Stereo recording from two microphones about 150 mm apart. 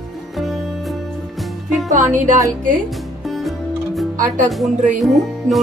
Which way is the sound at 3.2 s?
Centre (ahead or behind).